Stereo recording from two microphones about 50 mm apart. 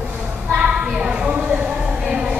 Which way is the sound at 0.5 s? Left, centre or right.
Centre.